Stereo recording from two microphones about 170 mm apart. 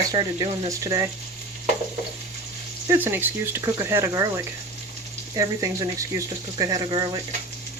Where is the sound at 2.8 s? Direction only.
15° right (ahead or behind).